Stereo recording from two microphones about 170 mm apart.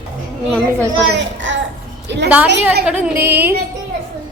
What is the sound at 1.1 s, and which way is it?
A child's voice, 90° right.